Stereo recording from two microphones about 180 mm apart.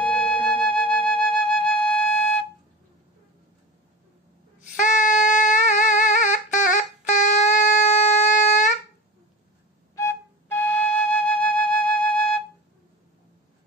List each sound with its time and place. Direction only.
0.0 s flute: 10° left (ahead or behind)
4.6 s music: 45° left (ahead or behind)
9.9 s flute: 15° left (ahead or behind)